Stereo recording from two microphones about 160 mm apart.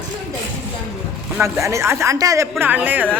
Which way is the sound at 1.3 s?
20° right (ahead or behind).